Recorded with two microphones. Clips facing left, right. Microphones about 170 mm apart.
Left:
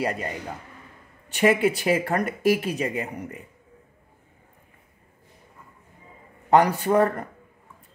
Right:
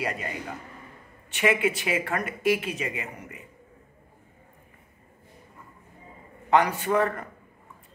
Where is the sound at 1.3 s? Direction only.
35° left (ahead or behind).